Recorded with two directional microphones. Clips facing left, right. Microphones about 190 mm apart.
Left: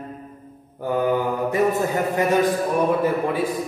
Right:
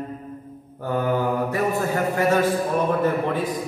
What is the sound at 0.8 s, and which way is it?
A man's voice, 15° left (ahead or behind).